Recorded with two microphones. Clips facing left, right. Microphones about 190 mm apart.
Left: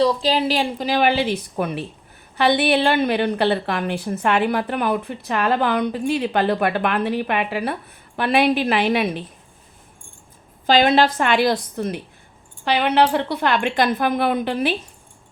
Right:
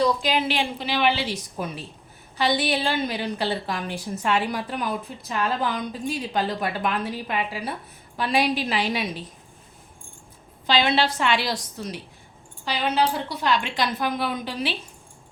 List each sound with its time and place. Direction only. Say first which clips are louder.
0.0 s a woman's voice: left 4 dB; 35° left (ahead or behind); by 9.2 s 60° left (ahead or behind)
10.7 s a woman's voice: left 6 dB; 45° left (ahead or behind)